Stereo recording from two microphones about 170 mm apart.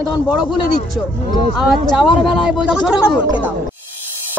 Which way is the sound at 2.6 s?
5° right (ahead or behind).